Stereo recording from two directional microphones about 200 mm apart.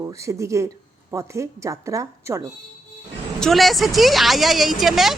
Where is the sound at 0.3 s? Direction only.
15° right (ahead or behind).